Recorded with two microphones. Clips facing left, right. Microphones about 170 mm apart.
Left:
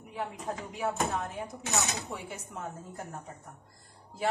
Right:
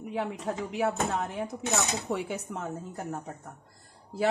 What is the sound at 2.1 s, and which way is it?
Speech, 80° right.